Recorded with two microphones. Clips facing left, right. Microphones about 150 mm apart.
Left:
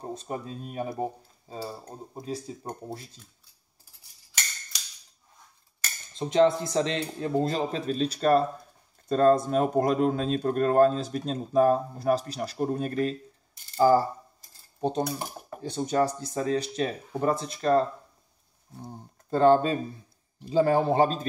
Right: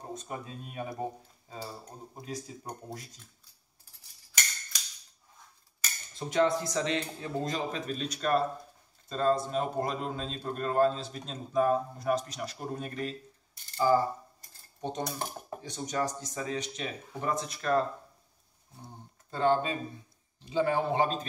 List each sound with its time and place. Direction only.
0.1 s a man's voice: 30° left (ahead or behind)
6.1 s a man's voice: 25° left (ahead or behind)
9.1 s speech: 50° left (ahead or behind)
14.8 s cutlery: 35° left (ahead or behind)
15.6 s a man's voice: 30° left (ahead or behind)
18.9 s a man's voice: 40° left (ahead or behind)